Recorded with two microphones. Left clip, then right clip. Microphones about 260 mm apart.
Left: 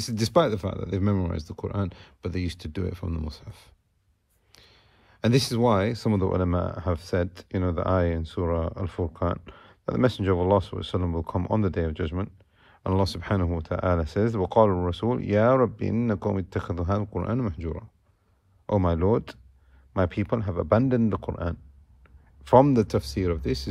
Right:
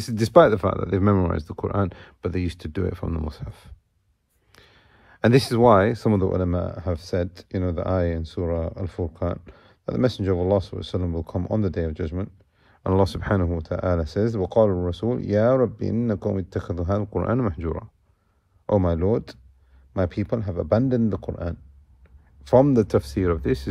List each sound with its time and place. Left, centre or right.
0.0 s speech: centre